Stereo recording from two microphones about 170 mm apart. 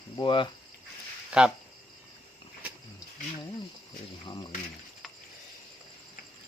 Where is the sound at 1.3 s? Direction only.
5° right (ahead or behind).